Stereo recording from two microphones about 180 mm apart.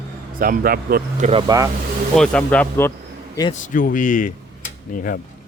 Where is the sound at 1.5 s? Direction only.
20° right (ahead or behind).